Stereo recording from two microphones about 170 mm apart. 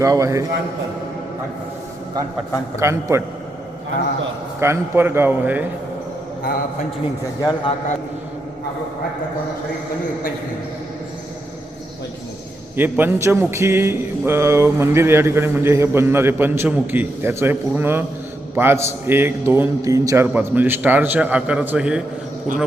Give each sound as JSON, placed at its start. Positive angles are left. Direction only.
{"t": 0.0, "sound": "a man's voice", "side_deg": -20}
{"t": 2.7, "sound": "a man's voice", "side_deg": -15}
{"t": 4.6, "sound": "a man's voice", "side_deg": -15}
{"t": 7.0, "sound": "speech", "side_deg": 30}
{"t": 12.7, "sound": "a man's voice", "side_deg": -10}